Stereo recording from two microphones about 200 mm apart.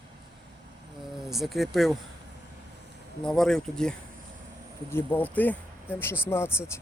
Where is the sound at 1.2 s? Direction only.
Centre (ahead or behind).